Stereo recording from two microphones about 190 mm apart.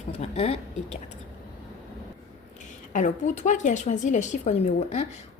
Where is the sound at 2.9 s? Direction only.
40° left (ahead or behind).